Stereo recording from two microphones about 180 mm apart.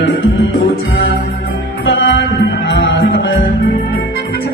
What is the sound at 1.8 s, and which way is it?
Music, 90° left.